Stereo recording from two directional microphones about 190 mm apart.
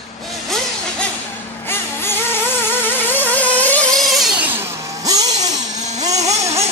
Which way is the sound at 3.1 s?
10° left (ahead or behind).